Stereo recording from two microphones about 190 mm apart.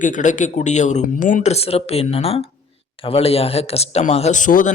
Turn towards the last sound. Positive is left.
turn(degrees=45)  # may be behind; listen again after turning